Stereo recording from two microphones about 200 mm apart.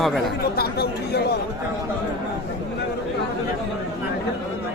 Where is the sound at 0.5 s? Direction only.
55° left (ahead or behind).